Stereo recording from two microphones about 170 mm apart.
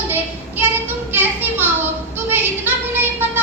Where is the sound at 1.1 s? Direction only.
10° right (ahead or behind).